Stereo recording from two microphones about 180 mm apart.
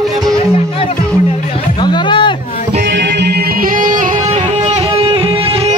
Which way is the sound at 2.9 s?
75° right (ahead or behind).